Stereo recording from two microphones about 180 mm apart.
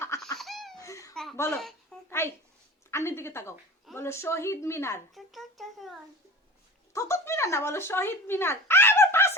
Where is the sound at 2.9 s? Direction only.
15° left (ahead or behind).